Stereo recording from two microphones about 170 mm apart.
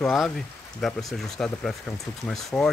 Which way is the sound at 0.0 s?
Centre (ahead or behind).